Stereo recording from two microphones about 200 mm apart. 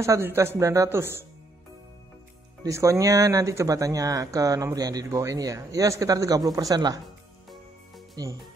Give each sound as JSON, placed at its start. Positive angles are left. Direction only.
{"t": 0.0, "sound": "speech", "side_deg": -15}
{"t": 2.6, "sound": "speech", "side_deg": -15}
{"t": 7.4, "sound": "music", "side_deg": 0}